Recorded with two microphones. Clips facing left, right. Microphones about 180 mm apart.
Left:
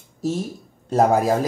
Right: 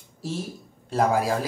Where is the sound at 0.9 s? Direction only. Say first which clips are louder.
Left 5 dB; 45° left (ahead or behind).